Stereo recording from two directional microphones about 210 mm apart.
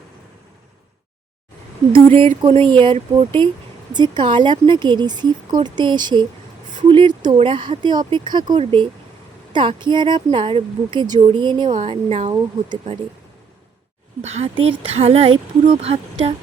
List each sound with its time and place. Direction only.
2.1 s a woman's voice: 25° right (ahead or behind)
14.2 s a woman's voice: 30° right (ahead or behind)